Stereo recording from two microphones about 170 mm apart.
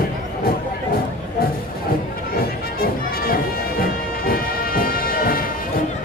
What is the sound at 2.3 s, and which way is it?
Music, 60° left (ahead or behind).